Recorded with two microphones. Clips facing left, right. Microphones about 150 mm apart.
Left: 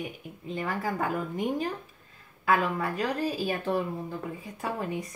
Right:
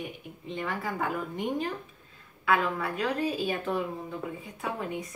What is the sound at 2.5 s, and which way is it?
Speech, 35° left (ahead or behind).